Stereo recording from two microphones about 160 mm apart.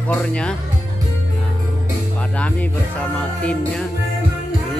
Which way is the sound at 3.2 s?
5° left (ahead or behind).